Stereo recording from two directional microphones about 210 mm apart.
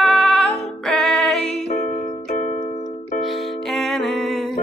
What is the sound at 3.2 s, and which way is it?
Music, centre (ahead or behind).